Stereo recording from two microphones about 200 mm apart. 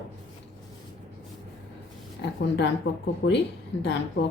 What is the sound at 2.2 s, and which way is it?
Speech, 60° left (ahead or behind).